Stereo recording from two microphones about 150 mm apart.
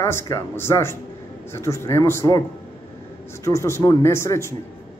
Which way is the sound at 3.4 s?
20° left (ahead or behind).